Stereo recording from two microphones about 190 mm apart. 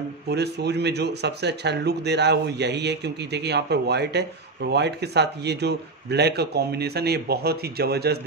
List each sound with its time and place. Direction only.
0.3 s speech: 60° right (ahead or behind)